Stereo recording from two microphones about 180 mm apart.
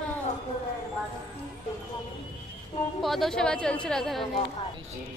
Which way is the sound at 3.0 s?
Centre (ahead or behind).